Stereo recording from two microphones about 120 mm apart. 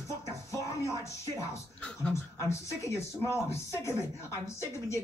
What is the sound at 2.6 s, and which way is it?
Speech, 25° left (ahead or behind).